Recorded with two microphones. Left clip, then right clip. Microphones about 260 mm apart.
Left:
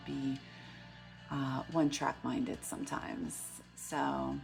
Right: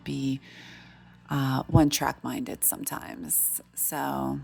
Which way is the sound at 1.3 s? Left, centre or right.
Right.